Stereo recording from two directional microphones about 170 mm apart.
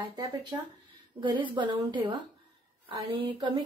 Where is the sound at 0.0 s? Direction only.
25° right (ahead or behind).